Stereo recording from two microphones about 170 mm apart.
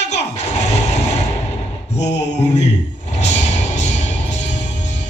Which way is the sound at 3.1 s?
45° left (ahead or behind).